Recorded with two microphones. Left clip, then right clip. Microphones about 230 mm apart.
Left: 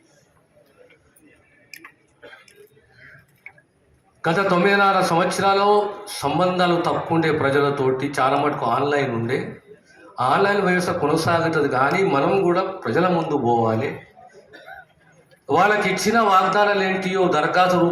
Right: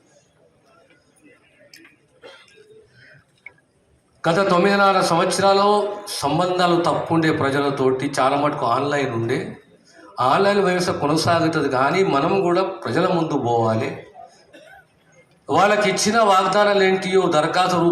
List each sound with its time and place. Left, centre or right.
4.2 s a man's voice: right
15.4 s a man's voice: right